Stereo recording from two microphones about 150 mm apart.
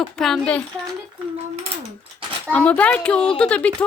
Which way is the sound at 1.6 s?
45° right (ahead or behind).